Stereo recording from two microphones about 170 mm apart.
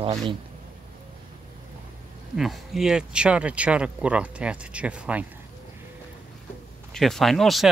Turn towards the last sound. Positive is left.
turn(degrees=0)  # may be behind; listen again after turning